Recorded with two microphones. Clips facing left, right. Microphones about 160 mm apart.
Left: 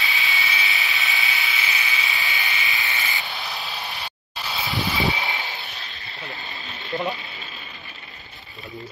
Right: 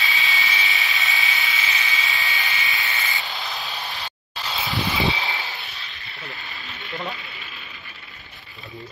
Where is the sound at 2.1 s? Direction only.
20° left (ahead or behind).